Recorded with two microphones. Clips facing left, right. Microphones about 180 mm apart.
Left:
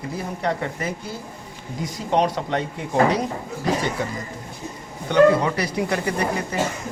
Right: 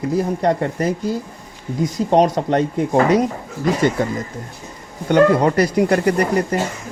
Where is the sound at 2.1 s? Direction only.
45° right (ahead or behind).